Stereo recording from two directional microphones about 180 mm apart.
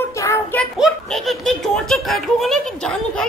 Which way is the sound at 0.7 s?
Centre (ahead or behind).